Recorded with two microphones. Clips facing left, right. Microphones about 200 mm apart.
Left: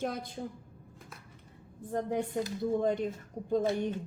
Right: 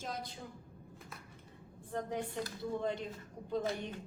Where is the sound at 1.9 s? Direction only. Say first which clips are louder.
Left 6 dB; 40° left (ahead or behind).